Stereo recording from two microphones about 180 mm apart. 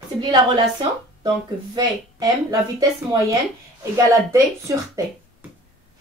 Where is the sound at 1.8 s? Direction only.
20° right (ahead or behind).